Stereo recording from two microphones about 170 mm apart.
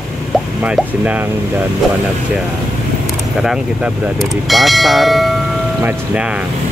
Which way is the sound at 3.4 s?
Centre (ahead or behind).